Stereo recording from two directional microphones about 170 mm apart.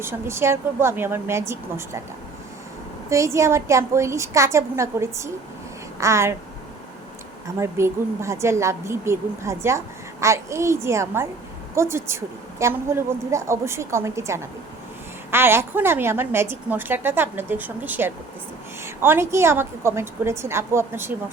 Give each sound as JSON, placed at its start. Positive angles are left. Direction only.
{"t": 0.0, "sound": "a woman's voice", "side_deg": -15}
{"t": 3.1, "sound": "a woman's voice", "side_deg": -15}
{"t": 7.6, "sound": "a woman's voice", "side_deg": -15}